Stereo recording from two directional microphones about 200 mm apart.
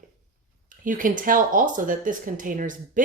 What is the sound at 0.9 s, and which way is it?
Speech, 45° right (ahead or behind).